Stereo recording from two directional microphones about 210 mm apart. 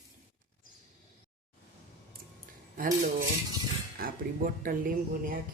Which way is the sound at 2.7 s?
40° right (ahead or behind).